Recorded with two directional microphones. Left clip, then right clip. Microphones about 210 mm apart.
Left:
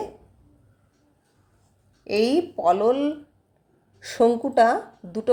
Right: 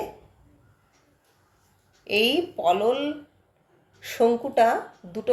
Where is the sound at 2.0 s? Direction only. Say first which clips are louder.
Left 1 dB; 35° left (ahead or behind).